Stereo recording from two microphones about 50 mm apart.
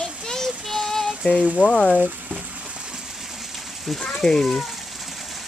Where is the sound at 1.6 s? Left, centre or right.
Centre.